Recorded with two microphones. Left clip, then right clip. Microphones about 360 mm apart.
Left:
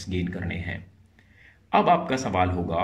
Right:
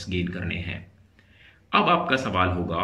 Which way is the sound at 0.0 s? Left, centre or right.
Centre.